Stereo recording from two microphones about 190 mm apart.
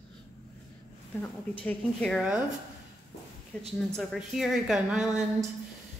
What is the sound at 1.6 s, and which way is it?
Speech, 5° left (ahead or behind).